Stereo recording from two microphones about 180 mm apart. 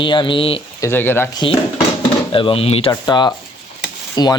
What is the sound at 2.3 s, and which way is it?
Speech, 30° left (ahead or behind).